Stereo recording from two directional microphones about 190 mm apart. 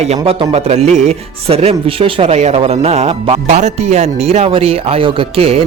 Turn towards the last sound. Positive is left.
turn(degrees=-30)  # may be behind; listen again after turning